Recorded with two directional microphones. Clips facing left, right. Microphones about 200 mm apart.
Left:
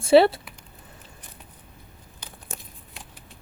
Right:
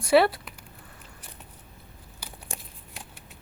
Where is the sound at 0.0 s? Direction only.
25° left (ahead or behind).